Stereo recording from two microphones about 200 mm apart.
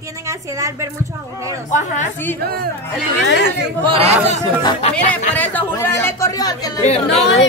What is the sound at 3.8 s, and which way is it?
Speech, 30° right (ahead or behind).